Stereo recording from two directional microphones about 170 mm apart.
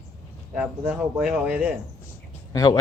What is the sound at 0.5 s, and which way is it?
Speech, 5° right (ahead or behind).